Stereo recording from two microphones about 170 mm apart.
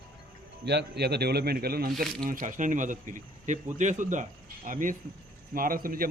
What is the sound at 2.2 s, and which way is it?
A man's voice, 50° right (ahead or behind).